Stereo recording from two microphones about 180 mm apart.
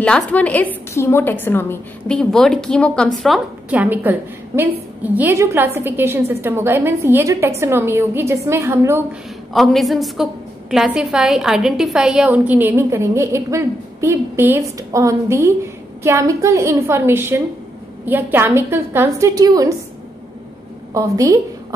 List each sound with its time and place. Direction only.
0.0 s a woman's voice: 5° left (ahead or behind); by 9.0 s 15° right (ahead or behind)
9.5 s a woman's voice: centre (ahead or behind); by 19.7 s 20° right (ahead or behind)
20.9 s a woman's voice: 20° right (ahead or behind)